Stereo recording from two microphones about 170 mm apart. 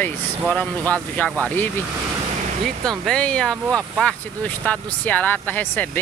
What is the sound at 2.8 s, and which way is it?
Speech, 5° left (ahead or behind).